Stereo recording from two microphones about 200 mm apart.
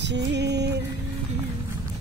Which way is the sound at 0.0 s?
60° right (ahead or behind).